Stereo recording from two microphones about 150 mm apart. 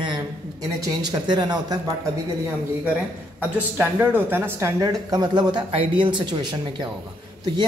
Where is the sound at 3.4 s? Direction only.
15° right (ahead or behind).